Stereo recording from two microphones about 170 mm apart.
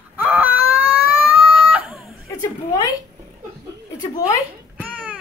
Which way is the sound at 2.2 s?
20° left (ahead or behind).